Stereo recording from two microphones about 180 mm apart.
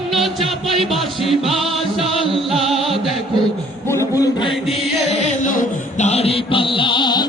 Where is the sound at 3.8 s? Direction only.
15° left (ahead or behind).